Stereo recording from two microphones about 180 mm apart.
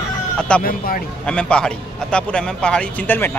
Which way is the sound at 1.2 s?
5° left (ahead or behind).